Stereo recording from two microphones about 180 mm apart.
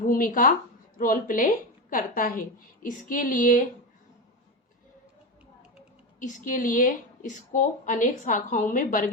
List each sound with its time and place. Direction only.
0.0 s a woman's voice: 50° left (ahead or behind)
6.1 s a woman's voice: 45° left (ahead or behind)